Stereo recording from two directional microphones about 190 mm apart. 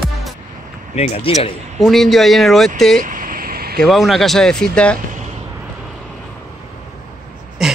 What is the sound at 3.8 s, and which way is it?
Speech, centre (ahead or behind).